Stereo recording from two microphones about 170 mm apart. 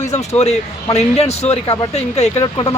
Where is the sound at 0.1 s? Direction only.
40° left (ahead or behind).